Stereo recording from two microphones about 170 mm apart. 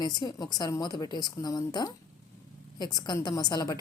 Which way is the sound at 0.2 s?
25° left (ahead or behind).